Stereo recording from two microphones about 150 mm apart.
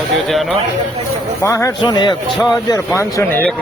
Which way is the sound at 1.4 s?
20° left (ahead or behind).